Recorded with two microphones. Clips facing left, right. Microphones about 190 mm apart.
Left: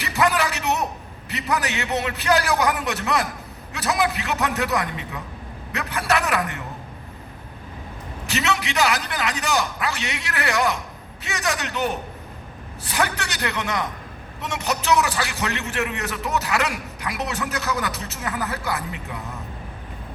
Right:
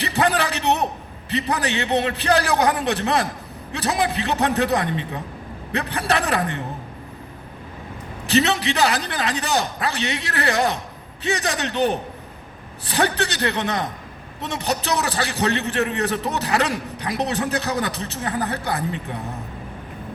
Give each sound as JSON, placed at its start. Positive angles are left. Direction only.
{"t": 0.0, "sound": "a sound", "side_deg": -35}
{"t": 1.3, "sound": "a man's voice", "side_deg": -30}
{"t": 8.3, "sound": "a man's voice", "side_deg": -35}